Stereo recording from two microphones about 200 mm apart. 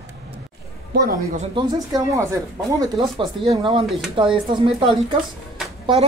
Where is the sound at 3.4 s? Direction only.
25° right (ahead or behind).